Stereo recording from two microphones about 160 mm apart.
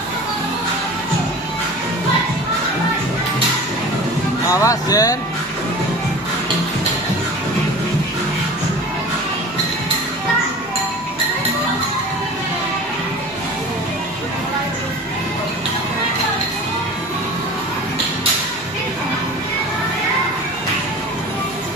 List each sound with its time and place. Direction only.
4.5 s speech: 20° left (ahead or behind)